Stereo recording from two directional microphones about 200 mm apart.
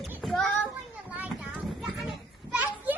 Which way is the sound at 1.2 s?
5° right (ahead or behind).